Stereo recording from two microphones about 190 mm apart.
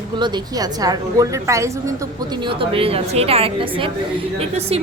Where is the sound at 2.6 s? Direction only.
30° right (ahead or behind).